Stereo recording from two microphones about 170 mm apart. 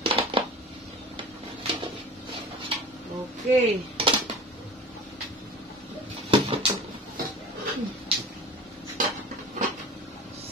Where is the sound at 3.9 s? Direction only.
30° right (ahead or behind).